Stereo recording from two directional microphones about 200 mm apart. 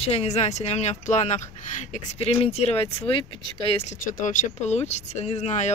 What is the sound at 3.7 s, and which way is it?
Speech, 40° left (ahead or behind).